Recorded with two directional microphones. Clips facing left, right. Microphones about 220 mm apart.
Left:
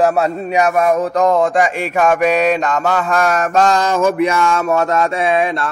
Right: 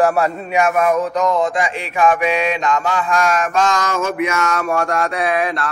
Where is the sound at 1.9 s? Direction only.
45° left (ahead or behind).